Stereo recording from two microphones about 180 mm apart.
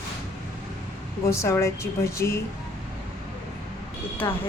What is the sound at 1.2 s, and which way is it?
Speech, 15° left (ahead or behind).